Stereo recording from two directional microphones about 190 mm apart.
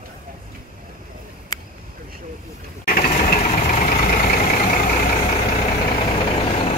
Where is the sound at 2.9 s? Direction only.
50° left (ahead or behind).